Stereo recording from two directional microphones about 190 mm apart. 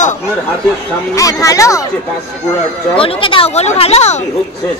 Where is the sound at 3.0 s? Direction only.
30° left (ahead or behind).